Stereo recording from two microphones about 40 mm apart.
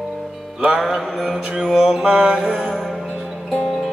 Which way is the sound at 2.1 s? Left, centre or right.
Right.